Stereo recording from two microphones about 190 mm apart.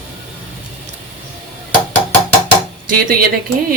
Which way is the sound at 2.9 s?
50° right (ahead or behind).